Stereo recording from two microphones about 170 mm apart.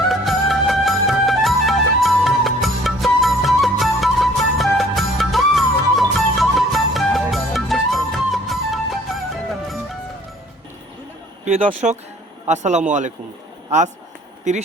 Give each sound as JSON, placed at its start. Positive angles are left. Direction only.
{"t": 0.1, "sound": "music", "side_deg": 0}
{"t": 11.4, "sound": "a man's voice", "side_deg": -45}